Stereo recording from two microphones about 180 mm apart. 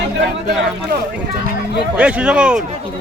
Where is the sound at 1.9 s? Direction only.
5° right (ahead or behind).